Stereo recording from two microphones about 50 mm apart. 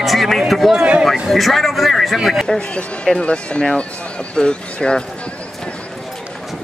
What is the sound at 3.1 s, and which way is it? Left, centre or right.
Speech, left.